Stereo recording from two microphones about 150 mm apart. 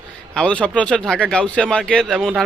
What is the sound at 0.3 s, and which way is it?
A man's voice, 5° left (ahead or behind).